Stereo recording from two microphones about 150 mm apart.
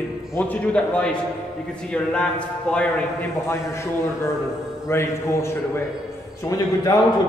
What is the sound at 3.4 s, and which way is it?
A man's voice, 20° left (ahead or behind).